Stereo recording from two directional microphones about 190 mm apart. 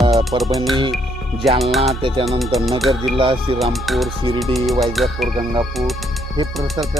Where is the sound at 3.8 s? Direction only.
Centre (ahead or behind).